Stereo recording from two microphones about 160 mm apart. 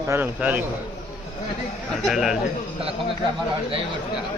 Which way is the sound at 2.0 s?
Centre (ahead or behind).